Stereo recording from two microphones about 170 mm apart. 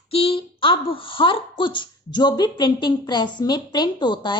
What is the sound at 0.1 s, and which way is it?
A woman's voice, 35° left (ahead or behind).